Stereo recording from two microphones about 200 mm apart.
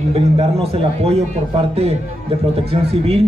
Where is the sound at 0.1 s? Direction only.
30° right (ahead or behind).